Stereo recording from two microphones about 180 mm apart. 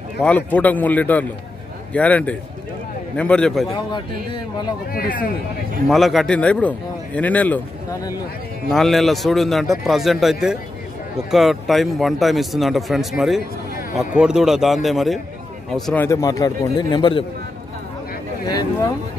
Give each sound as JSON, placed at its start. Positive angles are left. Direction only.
{"t": 0.2, "sound": "a man's voice", "side_deg": 10}
{"t": 4.9, "sound": "speech", "side_deg": 55}
{"t": 5.9, "sound": "a man's voice", "side_deg": 0}
{"t": 18.5, "sound": "a man's voice", "side_deg": 20}